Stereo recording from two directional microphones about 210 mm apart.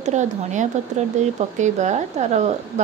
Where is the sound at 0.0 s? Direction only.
35° right (ahead or behind).